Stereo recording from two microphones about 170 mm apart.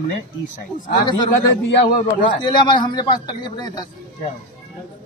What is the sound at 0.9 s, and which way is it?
A man's voice, 25° left (ahead or behind).